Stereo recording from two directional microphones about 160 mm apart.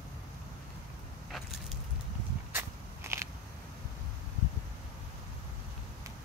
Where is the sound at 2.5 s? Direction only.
15° right (ahead or behind).